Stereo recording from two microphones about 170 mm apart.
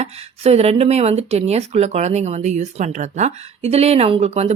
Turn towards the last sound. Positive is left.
turn(degrees=-40)  # may be behind; listen again after turning